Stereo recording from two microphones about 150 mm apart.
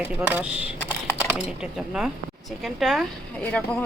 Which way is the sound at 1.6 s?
5° right (ahead or behind).